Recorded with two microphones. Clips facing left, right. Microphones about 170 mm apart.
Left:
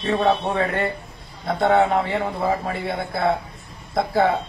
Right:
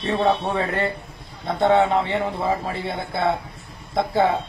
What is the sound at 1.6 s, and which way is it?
Speech, centre (ahead or behind).